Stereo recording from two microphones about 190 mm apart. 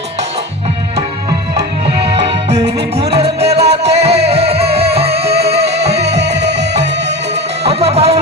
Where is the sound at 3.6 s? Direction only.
60° right (ahead or behind).